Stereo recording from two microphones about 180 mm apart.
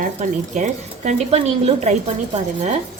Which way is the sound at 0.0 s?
45° right (ahead or behind).